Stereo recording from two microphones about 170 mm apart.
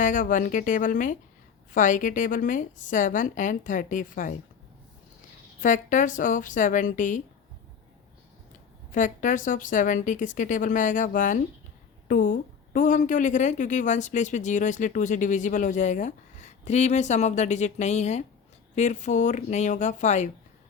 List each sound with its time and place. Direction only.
0.0 s a woman's voice: 50° left (ahead or behind)
5.5 s a woman's voice: 50° left (ahead or behind)
8.9 s a woman's voice: 50° left (ahead or behind)